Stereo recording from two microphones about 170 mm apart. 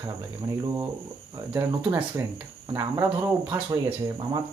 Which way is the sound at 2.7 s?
20° right (ahead or behind).